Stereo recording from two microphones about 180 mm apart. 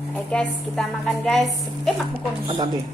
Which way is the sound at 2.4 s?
25° right (ahead or behind).